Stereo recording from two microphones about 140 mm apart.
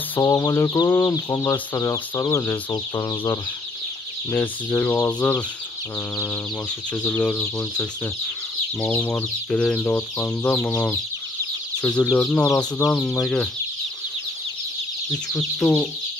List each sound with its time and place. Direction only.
0.2 s speech: 25° left (ahead or behind); by 13.5 s 5° left (ahead or behind)
15.6 s speech: centre (ahead or behind)